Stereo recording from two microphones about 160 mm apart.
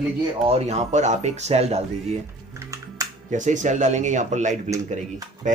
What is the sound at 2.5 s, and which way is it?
Music, 20° right (ahead or behind).